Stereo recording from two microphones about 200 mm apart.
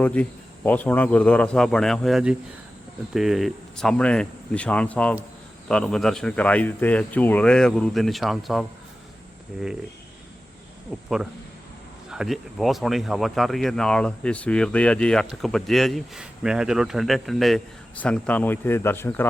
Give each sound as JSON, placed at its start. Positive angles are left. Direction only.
{"t": 0.0, "sound": "speech", "side_deg": 5}
{"t": 12.1, "sound": "speech", "side_deg": 0}